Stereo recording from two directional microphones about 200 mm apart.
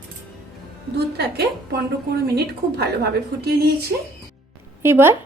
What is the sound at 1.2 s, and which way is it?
A woman's voice, 50° right (ahead or behind).